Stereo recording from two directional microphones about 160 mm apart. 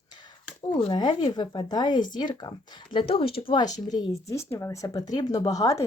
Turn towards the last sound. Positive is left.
turn(degrees=20)  # may be behind; listen again after turning